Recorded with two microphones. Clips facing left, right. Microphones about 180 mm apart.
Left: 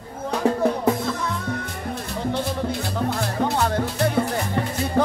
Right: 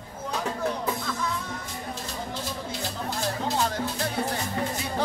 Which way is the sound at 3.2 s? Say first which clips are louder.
Left 2 dB; 60° left (ahead or behind).